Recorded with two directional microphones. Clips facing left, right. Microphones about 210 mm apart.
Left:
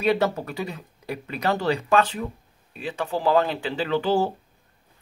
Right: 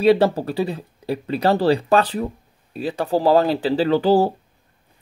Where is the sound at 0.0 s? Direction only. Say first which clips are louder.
Right 7 dB; 30° right (ahead or behind).